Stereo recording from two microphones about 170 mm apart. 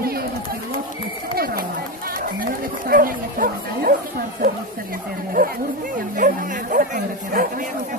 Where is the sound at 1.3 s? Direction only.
60° right (ahead or behind).